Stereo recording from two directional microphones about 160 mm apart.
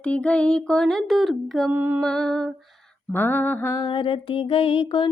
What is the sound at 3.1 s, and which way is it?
Mantra, 10° left (ahead or behind).